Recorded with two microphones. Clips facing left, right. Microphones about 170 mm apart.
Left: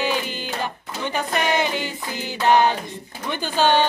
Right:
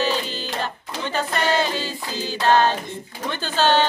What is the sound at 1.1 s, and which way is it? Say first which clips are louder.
Music: right 1 dB; 15° left (ahead or behind).